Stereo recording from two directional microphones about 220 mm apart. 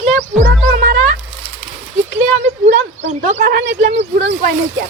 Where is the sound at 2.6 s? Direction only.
55° right (ahead or behind).